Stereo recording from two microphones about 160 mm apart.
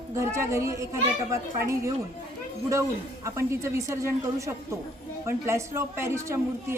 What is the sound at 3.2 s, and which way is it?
A woman's voice, 20° right (ahead or behind).